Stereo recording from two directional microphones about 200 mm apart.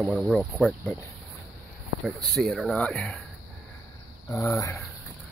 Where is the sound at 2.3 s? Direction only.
Centre (ahead or behind).